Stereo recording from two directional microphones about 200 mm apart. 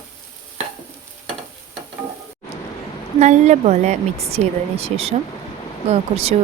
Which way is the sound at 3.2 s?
35° right (ahead or behind).